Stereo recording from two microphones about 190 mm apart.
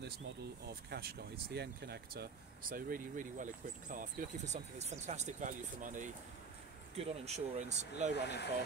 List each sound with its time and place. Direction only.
0.7 s speech: 55° right (ahead or behind); by 8.1 s 35° right (ahead or behind)
8.1 s speech: 65° left (ahead or behind)